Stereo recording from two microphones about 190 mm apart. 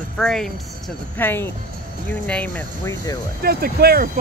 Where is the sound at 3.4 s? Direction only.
55° right (ahead or behind).